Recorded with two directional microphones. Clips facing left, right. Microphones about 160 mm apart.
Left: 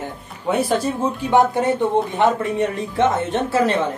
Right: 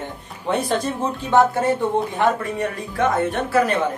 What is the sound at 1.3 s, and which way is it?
A woman's voice, 20° left (ahead or behind).